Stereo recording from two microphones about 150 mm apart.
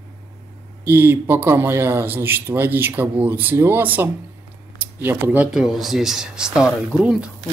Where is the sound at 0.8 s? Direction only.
15° right (ahead or behind).